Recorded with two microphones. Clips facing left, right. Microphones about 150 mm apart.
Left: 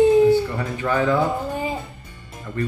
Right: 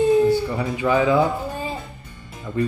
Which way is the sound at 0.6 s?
10° right (ahead or behind).